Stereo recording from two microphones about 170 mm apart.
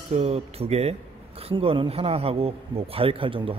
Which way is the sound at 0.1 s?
40° right (ahead or behind).